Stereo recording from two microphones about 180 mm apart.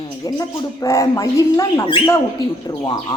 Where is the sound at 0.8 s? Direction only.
20° left (ahead or behind).